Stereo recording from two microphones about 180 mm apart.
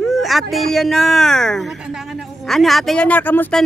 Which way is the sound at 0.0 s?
Centre (ahead or behind).